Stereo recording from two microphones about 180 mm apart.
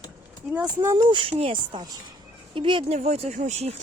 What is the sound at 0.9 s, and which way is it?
Speech, 30° right (ahead or behind).